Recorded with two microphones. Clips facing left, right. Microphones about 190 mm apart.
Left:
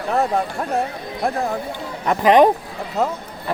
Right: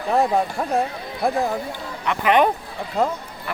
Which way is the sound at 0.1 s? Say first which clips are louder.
Right 1 dB; centre (ahead or behind).